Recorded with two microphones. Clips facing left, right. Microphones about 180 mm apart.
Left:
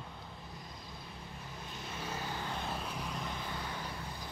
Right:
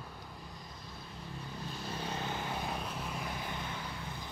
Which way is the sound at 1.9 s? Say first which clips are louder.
Right 2 dB; 30° right (ahead or behind).